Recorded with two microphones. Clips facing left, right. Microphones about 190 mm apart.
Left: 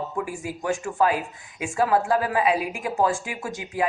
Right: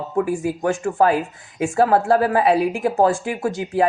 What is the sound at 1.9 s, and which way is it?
Speech, 65° right (ahead or behind).